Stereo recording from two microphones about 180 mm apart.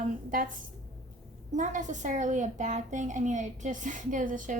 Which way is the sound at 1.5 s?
45° right (ahead or behind).